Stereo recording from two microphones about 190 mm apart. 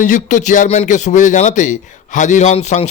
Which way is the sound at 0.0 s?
40° left (ahead or behind).